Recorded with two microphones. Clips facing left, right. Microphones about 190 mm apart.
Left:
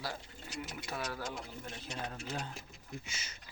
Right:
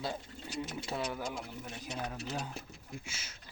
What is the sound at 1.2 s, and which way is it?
Speech, 10° right (ahead or behind).